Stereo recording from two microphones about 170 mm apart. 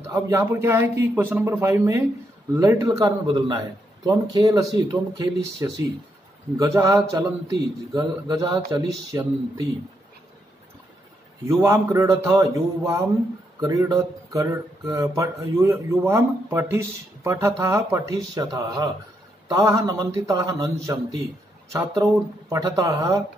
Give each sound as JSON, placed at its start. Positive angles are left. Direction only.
{"t": 0.1, "sound": "a man's voice", "side_deg": -20}
{"t": 11.4, "sound": "a man's voice", "side_deg": -15}
{"t": 22.5, "sound": "a man's voice", "side_deg": -20}